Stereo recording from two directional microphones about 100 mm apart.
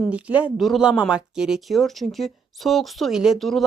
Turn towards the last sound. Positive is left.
turn(degrees=0)  # may be behind; listen again after turning